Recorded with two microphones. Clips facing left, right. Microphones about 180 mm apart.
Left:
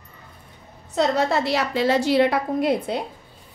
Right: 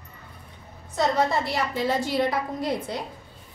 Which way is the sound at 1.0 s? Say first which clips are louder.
Left 3 dB; 75° left (ahead or behind).